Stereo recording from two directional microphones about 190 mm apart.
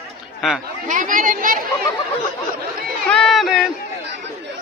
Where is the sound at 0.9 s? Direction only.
45° right (ahead or behind).